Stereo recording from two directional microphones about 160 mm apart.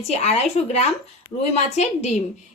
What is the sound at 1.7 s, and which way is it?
Speech, 45° left (ahead or behind).